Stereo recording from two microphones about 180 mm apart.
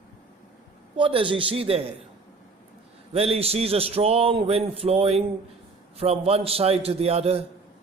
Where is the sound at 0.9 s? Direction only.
30° right (ahead or behind).